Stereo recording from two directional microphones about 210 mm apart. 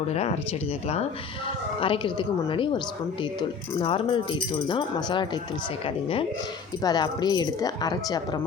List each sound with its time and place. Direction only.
0.1 s speech: 30° left (ahead or behind)
1.8 s speech: 25° left (ahead or behind)